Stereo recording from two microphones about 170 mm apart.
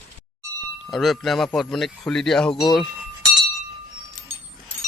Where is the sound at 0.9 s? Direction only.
Centre (ahead or behind).